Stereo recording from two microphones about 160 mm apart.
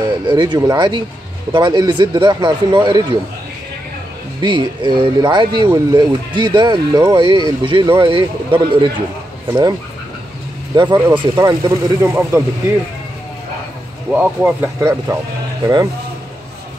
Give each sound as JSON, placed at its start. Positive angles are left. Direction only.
{"t": 0.1, "sound": "speech", "side_deg": -30}
{"t": 4.4, "sound": "speech", "side_deg": -30}
{"t": 14.1, "sound": "speech", "side_deg": -10}